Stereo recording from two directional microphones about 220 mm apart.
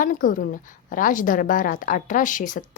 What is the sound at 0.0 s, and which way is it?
A woman's voice, 40° left (ahead or behind).